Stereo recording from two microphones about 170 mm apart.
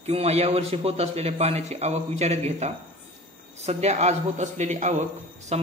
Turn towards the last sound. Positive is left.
turn(degrees=-40)  # may be behind; listen again after turning